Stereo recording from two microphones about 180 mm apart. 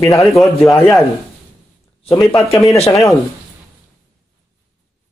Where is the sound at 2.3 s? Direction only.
15° left (ahead or behind).